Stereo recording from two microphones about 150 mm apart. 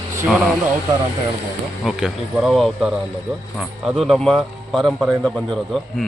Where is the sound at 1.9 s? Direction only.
5° right (ahead or behind).